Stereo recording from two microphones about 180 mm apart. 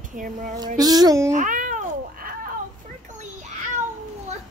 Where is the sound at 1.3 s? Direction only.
45° right (ahead or behind).